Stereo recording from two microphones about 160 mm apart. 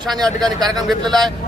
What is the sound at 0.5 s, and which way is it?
Speech, 25° right (ahead or behind).